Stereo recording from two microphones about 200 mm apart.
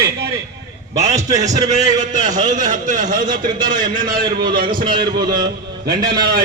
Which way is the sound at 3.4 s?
20° right (ahead or behind).